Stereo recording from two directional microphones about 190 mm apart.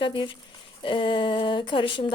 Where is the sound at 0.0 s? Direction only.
25° left (ahead or behind).